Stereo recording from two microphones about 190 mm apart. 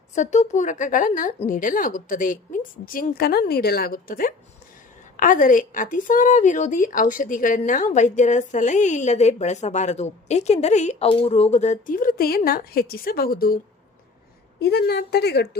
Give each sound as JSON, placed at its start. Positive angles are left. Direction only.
{"t": 0.1, "sound": "a woman's voice", "side_deg": 40}
{"t": 14.6, "sound": "a woman's voice", "side_deg": 60}